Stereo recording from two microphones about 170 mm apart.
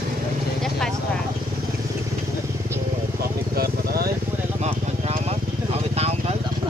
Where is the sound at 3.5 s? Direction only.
65° right (ahead or behind).